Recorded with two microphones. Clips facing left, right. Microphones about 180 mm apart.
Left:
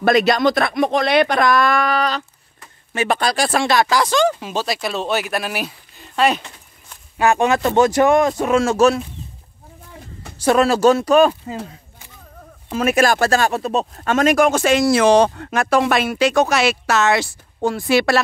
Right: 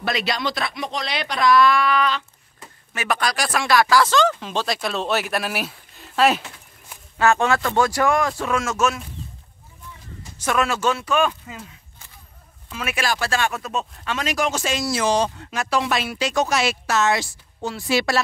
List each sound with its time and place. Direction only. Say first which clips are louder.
0.0 s speech: left 10 dB; 50° left (ahead or behind)
2.9 s speech: left 5 dB; 30° left (ahead or behind); by 7.0 s 5° right (ahead or behind)
7.2 s speech: left 3 dB; 15° left (ahead or behind); by 9.0 s 35° left (ahead or behind)
10.4 s speech: left 8 dB; 35° left (ahead or behind)
12.7 s speech: left 10 dB; 40° left (ahead or behind); by 18.2 s 60° left (ahead or behind)